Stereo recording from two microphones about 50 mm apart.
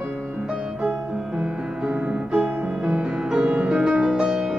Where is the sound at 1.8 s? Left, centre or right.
Right.